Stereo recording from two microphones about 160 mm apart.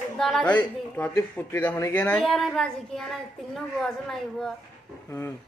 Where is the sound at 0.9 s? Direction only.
10° left (ahead or behind).